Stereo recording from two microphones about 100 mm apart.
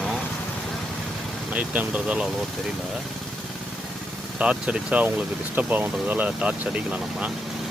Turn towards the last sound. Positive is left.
turn(degrees=-10)  # may be behind; listen again after turning